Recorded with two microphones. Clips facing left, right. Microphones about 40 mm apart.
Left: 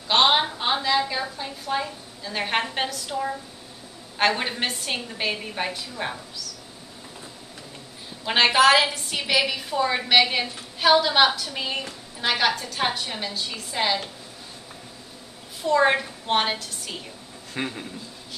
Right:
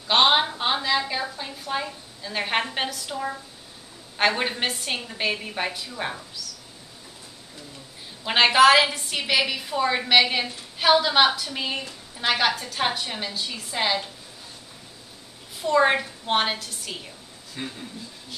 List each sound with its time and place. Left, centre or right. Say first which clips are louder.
0.1 s a woman's voice: even; centre
8.3 s a woman's voice: right 1 dB; centre
15.6 s a woman's voice: even; centre
17.6 s a man's voice: left 5 dB; left